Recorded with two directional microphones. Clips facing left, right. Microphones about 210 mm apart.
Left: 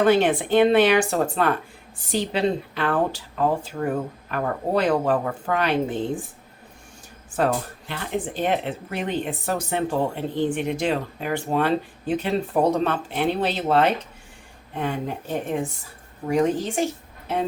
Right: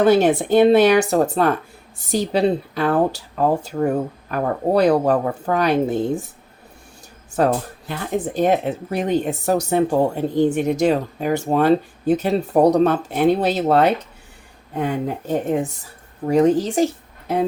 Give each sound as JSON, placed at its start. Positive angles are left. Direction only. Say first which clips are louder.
{"t": 0.0, "sound": "speech", "louder": "right 4 dB", "side_deg": -40}
{"t": 7.3, "sound": "speech", "louder": "right 4 dB", "side_deg": -40}